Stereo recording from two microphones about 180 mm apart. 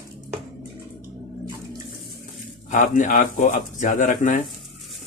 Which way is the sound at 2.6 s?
45° left (ahead or behind).